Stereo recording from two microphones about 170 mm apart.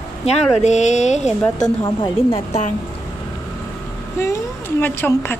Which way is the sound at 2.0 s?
30° left (ahead or behind).